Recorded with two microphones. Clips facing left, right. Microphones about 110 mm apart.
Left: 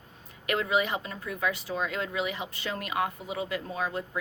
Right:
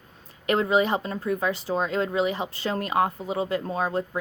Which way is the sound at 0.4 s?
30° right (ahead or behind).